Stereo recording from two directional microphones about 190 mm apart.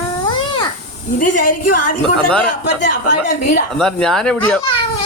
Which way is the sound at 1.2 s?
45° left (ahead or behind).